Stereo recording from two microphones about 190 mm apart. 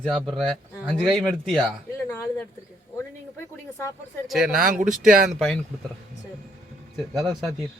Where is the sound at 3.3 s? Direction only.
15° left (ahead or behind).